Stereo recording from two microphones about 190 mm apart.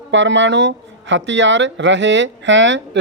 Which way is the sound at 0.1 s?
75° right (ahead or behind).